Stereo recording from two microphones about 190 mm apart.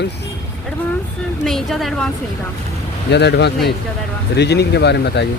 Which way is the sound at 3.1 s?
60° left (ahead or behind).